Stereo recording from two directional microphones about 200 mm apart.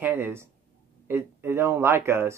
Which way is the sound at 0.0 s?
10° right (ahead or behind).